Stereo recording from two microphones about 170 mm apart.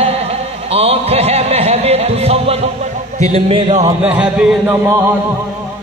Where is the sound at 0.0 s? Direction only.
35° right (ahead or behind).